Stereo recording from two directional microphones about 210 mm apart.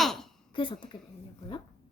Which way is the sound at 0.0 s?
Centre (ahead or behind).